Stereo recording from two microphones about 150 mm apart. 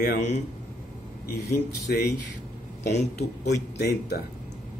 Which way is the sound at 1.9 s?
90° left.